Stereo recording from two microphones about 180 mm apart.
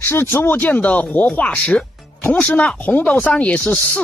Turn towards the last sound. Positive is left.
turn(degrees=5)  # may be behind; listen again after turning